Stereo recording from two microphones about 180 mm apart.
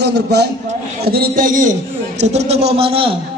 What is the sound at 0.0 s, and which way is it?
A man's voice, 70° right (ahead or behind).